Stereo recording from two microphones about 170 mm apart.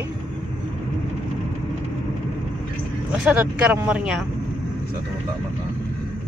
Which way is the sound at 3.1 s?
10° right (ahead or behind).